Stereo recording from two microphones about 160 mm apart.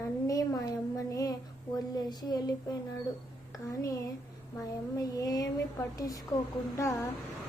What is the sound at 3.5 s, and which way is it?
Speech, 20° left (ahead or behind).